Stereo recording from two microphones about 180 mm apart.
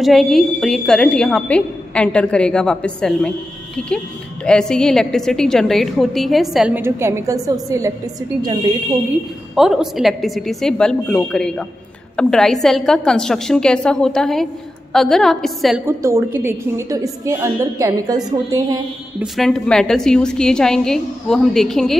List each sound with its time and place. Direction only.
0.0 s a woman's voice: centre (ahead or behind); by 7.9 s 20° right (ahead or behind)
9.6 s a woman's voice: centre (ahead or behind)
15.8 s a woman's voice: 15° right (ahead or behind)
19.1 s a woman's voice: centre (ahead or behind)